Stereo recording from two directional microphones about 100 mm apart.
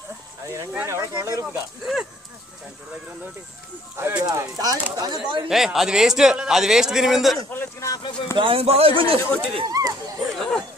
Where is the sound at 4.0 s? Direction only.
25° right (ahead or behind); by 5.4 s 50° right (ahead or behind).